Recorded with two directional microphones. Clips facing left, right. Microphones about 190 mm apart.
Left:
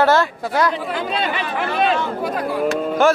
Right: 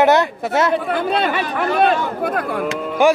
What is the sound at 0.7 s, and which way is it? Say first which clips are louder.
Speech: right 5 dB; 55° right (ahead or behind).